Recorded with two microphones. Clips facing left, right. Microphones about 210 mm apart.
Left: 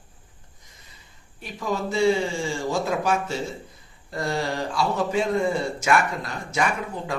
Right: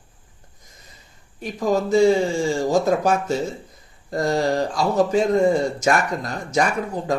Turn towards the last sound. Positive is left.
turn(degrees=-40)  # may be behind; listen again after turning